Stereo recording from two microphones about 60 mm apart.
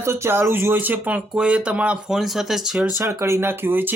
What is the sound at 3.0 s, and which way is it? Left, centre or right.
Speech, right.